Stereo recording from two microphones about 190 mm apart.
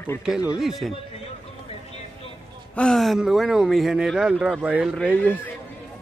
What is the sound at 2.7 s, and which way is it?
Speech, centre (ahead or behind).